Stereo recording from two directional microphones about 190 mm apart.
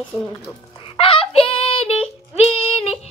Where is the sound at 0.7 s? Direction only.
30° left (ahead or behind).